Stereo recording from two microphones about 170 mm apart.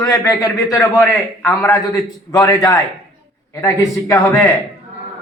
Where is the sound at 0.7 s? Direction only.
20° left (ahead or behind).